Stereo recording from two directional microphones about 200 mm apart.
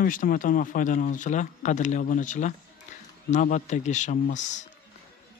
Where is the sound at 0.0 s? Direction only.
45° left (ahead or behind).